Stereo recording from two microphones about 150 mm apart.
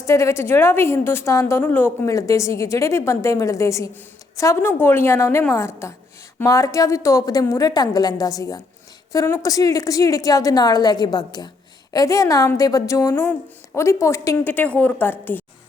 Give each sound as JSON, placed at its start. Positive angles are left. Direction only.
{"t": 0.0, "sound": "a woman's voice", "side_deg": 20}